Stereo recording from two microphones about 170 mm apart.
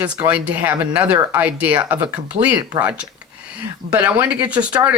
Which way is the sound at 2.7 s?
25° right (ahead or behind).